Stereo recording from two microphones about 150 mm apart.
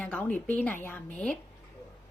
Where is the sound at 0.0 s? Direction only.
5° left (ahead or behind).